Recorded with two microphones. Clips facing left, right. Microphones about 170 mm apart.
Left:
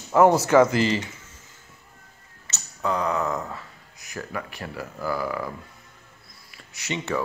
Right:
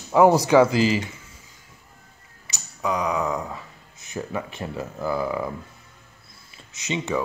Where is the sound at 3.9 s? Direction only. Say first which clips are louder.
Right 4 dB; 25° right (ahead or behind).